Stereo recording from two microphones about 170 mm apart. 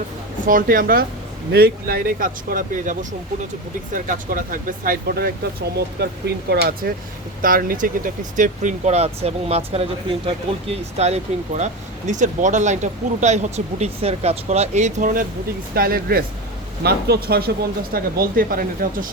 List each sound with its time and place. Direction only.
0.4 s speech: 55° right (ahead or behind)
6.0 s speech: 70° right (ahead or behind); by 19.0 s 55° right (ahead or behind)